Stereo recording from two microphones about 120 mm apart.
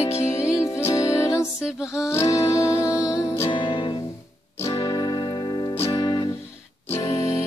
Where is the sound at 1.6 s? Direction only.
5° right (ahead or behind).